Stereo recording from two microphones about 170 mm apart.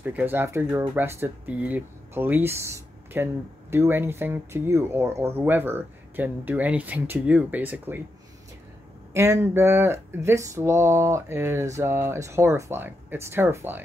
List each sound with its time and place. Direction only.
0.0 s speech: 10° right (ahead or behind)
9.1 s speech: 15° right (ahead or behind)